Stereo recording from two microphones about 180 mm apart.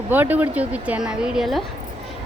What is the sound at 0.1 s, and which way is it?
A woman's voice, 10° right (ahead or behind).